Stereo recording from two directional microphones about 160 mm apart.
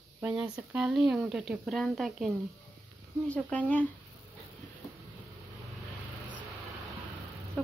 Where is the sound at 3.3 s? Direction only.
10° left (ahead or behind).